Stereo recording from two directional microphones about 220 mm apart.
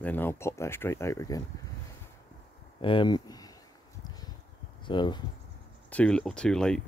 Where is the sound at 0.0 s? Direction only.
10° left (ahead or behind).